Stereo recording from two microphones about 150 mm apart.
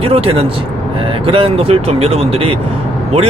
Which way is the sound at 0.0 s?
40° right (ahead or behind).